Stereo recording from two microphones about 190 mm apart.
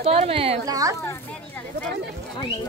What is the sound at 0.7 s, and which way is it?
Speech, 20° right (ahead or behind).